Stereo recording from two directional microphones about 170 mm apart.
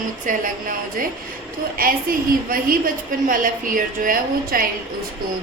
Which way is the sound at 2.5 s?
55° right (ahead or behind).